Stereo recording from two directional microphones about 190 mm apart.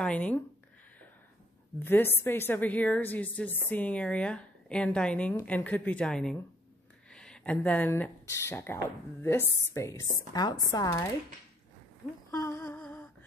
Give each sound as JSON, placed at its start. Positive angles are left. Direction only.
{"t": 0.0, "sound": "speech", "side_deg": 5}
{"t": 1.8, "sound": "a woman's voice", "side_deg": 10}
{"t": 12.3, "sound": "humming", "side_deg": 15}